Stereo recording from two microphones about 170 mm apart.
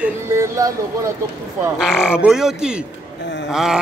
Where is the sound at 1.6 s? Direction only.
5° right (ahead or behind).